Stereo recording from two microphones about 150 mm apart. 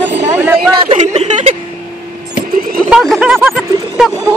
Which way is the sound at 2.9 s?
5° right (ahead or behind).